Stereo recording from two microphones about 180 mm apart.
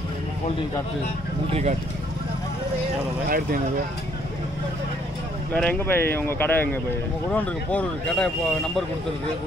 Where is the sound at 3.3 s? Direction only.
50° right (ahead or behind).